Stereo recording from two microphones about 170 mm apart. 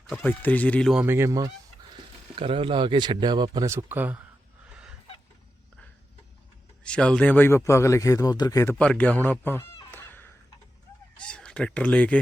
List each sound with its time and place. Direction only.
0.2 s a man's voice: 10° left (ahead or behind)
0.9 s speech: 15° right (ahead or behind)
2.3 s speech: 35° right (ahead or behind); by 4.2 s 10° right (ahead or behind)
6.8 s a man's voice: 5° left (ahead or behind)
8.8 s honk: 5° left (ahead or behind)
11.2 s speech: 5° left (ahead or behind)